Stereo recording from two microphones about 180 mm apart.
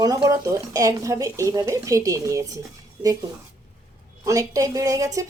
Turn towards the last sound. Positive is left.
turn(degrees=-20)  # may be behind; listen again after turning